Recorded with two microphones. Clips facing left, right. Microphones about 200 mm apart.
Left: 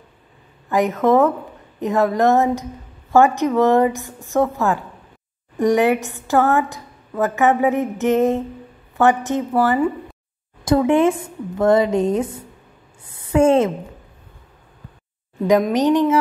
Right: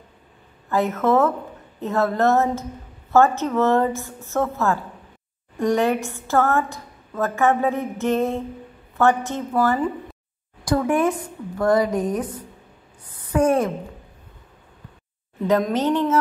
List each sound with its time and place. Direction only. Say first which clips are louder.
0.7 s a woman's voice: left 3 dB; 15° left (ahead or behind)
15.4 s a woman's voice: left 4 dB; 15° left (ahead or behind)